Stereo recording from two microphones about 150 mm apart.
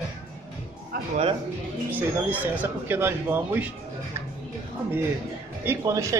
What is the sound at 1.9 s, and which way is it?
Speech, 10° right (ahead or behind).